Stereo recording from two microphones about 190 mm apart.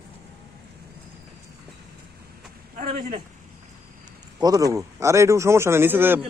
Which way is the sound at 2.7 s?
45° right (ahead or behind).